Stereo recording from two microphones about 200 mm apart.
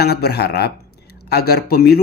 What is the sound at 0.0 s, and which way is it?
Speech, 55° left (ahead or behind).